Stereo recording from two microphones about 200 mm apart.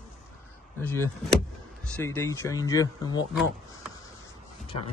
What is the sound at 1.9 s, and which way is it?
Speech, 10° left (ahead or behind).